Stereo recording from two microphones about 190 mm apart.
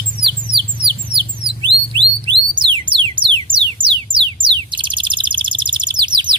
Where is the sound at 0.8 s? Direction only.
25° right (ahead or behind).